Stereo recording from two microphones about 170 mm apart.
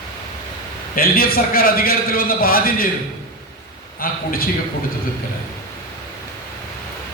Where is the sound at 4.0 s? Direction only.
60° left (ahead or behind).